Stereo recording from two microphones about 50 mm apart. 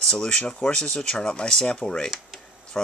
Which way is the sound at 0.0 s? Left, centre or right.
Centre.